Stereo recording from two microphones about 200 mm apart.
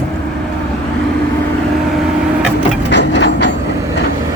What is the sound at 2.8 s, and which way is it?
Wood, 60° left (ahead or behind).